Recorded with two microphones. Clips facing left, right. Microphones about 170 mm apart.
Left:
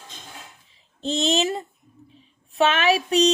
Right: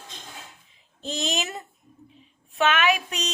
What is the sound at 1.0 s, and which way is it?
A woman's voice, 30° left (ahead or behind).